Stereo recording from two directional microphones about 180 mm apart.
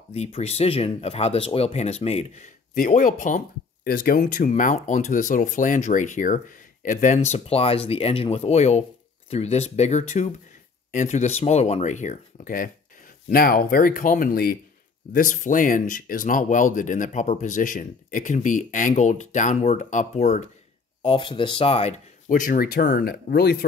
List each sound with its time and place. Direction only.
0.1 s speech: 35° left (ahead or behind)
21.0 s speech: 30° left (ahead or behind)
22.3 s speech: 50° left (ahead or behind)